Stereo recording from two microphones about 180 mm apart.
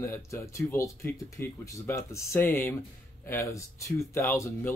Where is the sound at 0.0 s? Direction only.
15° left (ahead or behind).